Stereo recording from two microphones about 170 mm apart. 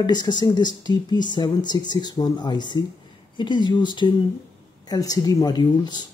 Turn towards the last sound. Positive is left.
turn(degrees=25)  # may be behind; listen again after turning